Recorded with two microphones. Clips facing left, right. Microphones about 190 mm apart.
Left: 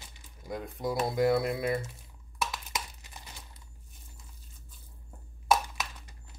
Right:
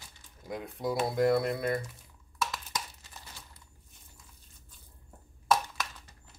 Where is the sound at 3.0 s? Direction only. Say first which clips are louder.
Left 1 dB; 15° left (ahead or behind).